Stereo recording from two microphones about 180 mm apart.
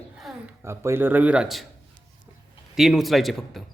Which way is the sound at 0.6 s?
15° right (ahead or behind).